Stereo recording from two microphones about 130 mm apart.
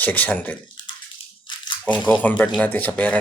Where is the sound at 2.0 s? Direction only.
10° left (ahead or behind).